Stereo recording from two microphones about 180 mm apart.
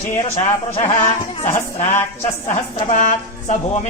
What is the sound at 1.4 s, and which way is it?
A woman's voice, 40° left (ahead or behind).